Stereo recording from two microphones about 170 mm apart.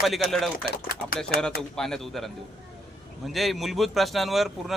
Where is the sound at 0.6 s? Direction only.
65° left (ahead or behind).